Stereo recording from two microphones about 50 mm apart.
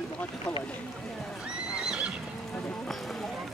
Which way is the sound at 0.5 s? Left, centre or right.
Centre.